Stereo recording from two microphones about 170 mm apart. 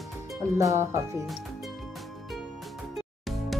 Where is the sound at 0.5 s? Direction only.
20° right (ahead or behind).